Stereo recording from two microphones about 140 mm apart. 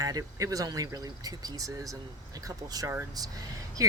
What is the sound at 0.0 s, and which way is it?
Speech, 25° right (ahead or behind).